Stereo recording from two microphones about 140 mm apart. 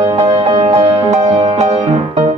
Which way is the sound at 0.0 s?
50° right (ahead or behind).